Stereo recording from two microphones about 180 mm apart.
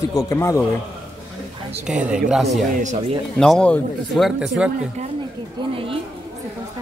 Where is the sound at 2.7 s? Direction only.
45° right (ahead or behind).